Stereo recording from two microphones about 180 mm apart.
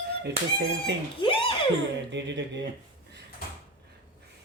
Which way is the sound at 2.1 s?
85° right.